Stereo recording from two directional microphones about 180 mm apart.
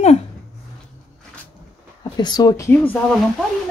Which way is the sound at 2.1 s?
25° left (ahead or behind).